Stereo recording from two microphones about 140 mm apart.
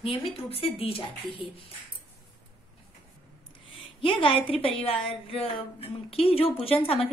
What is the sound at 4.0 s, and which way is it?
A woman's voice, 40° left (ahead or behind).